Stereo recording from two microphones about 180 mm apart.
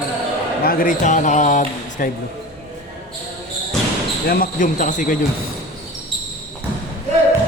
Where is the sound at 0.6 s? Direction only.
55° left (ahead or behind).